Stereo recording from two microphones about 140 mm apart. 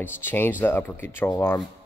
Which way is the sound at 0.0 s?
15° left (ahead or behind).